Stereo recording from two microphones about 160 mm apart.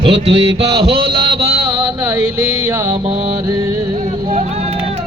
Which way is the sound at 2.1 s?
20° right (ahead or behind).